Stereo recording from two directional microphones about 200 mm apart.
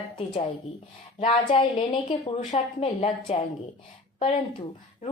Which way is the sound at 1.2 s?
25° left (ahead or behind).